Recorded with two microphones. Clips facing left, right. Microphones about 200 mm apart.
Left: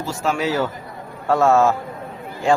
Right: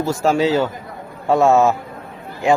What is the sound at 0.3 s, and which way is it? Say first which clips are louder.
A man's voice: right 5 dB; 25° right (ahead or behind).